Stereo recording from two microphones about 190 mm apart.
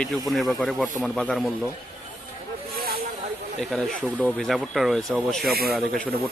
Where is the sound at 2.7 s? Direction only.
55° right (ahead or behind).